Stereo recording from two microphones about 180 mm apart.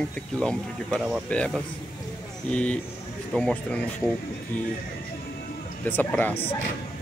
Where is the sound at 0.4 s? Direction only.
5° left (ahead or behind).